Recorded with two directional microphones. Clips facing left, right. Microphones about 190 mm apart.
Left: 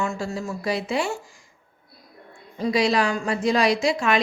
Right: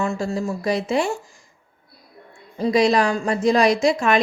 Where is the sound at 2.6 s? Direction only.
45° right (ahead or behind).